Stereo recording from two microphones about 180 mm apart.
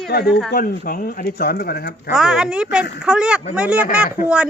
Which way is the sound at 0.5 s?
50° left (ahead or behind).